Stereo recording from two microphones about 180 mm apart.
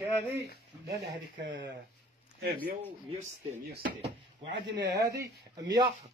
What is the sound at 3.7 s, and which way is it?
Speech, 60° right (ahead or behind).